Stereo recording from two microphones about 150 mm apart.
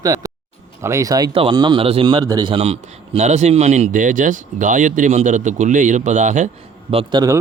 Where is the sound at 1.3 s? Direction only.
35° right (ahead or behind); by 6.5 s 55° right (ahead or behind).